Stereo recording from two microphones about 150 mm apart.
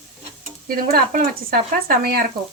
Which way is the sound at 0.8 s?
70° right (ahead or behind).